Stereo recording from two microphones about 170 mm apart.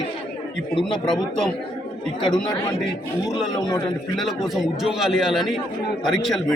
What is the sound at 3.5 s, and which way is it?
Speech, 25° left (ahead or behind).